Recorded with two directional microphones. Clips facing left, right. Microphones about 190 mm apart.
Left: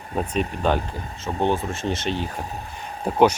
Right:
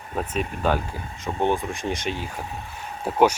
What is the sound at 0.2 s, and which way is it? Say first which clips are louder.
Speech: left 2 dB; 5° right (ahead or behind).